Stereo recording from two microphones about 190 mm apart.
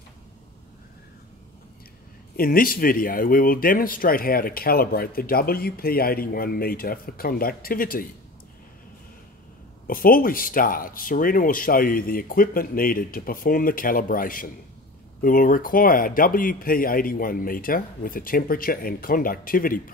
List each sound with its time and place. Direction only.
2.3 s speech: 50° left (ahead or behind)
9.8 s speech: 50° left (ahead or behind)